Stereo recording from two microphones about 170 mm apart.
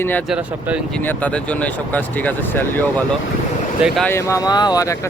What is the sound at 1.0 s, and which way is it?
Speech, 10° left (ahead or behind).